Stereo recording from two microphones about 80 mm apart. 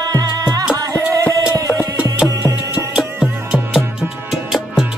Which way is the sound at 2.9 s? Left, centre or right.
Centre.